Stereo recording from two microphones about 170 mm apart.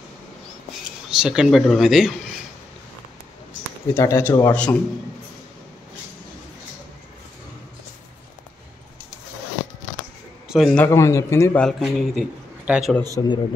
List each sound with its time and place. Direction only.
1.1 s speech: 5° right (ahead or behind)
3.9 s speech: 15° left (ahead or behind)
10.5 s a man's voice: centre (ahead or behind)
10.8 s speech: 15° left (ahead or behind)
11.6 s speech: centre (ahead or behind)
13.2 s speech: 25° left (ahead or behind)